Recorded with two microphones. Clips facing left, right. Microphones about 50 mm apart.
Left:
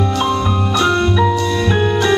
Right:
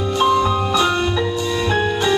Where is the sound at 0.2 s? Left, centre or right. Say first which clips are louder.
Right 1 dB; centre.